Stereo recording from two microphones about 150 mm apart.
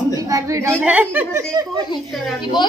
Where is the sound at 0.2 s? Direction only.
20° right (ahead or behind).